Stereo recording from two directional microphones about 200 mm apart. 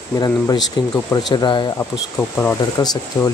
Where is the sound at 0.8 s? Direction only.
20° left (ahead or behind).